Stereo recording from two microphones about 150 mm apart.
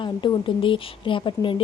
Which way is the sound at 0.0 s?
35° left (ahead or behind).